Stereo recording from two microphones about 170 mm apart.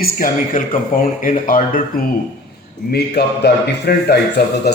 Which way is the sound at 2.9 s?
75° left (ahead or behind).